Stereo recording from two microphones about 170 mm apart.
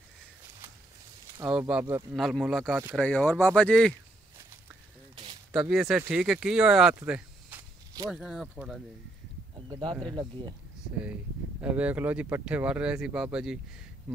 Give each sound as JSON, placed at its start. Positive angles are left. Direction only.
{"t": 1.4, "sound": "speech", "side_deg": -15}
{"t": 2.1, "sound": "speech", "side_deg": 0}
{"t": 5.1, "sound": "a sound", "side_deg": -30}
{"t": 5.5, "sound": "speech", "side_deg": 0}
{"t": 7.0, "sound": "a sound", "side_deg": -10}
{"t": 8.1, "sound": "speech", "side_deg": 0}
{"t": 9.7, "sound": "speech", "side_deg": -25}
{"t": 11.6, "sound": "speech", "side_deg": -10}